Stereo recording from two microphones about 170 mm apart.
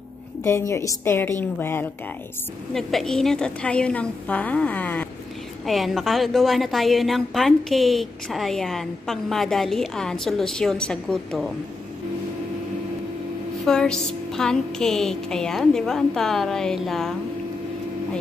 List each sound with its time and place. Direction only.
0.4 s a woman's voice: 15° left (ahead or behind)
2.7 s a woman's voice: centre (ahead or behind)
13.7 s a woman's voice: 5° left (ahead or behind)